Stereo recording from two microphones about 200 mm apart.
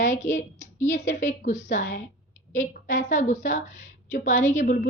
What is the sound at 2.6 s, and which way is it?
Speech, 35° left (ahead or behind).